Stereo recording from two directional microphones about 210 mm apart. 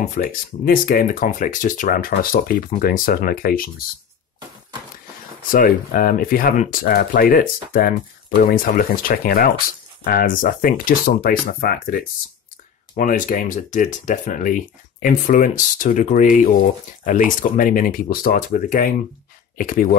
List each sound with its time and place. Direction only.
0.0 s speech: 40° left (ahead or behind)
5.5 s speech: 45° left (ahead or behind)